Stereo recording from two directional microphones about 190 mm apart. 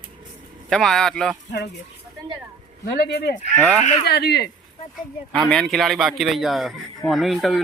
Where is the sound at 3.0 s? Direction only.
60° left (ahead or behind).